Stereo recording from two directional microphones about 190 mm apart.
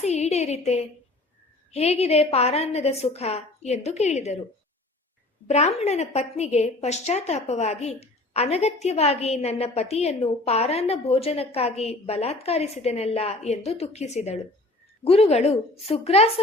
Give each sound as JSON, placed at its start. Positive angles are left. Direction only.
{"t": 0.0, "sound": "a woman's voice", "side_deg": 35}
{"t": 5.5, "sound": "a woman's voice", "side_deg": 35}